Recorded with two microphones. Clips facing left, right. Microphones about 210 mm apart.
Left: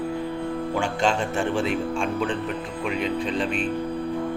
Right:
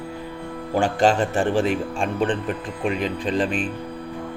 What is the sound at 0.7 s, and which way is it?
Speech, 35° right (ahead or behind).